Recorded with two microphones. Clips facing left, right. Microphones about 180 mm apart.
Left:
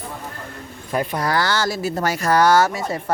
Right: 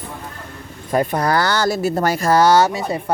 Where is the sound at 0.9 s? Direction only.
45° right (ahead or behind).